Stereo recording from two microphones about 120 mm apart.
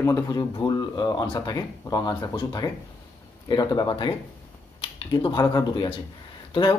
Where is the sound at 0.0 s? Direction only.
30° left (ahead or behind).